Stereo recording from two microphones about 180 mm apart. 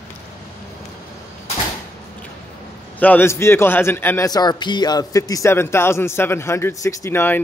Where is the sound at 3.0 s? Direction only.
10° left (ahead or behind).